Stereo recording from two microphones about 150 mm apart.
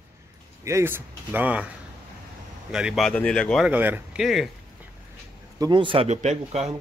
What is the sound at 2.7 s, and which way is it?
Speech, 5° right (ahead or behind).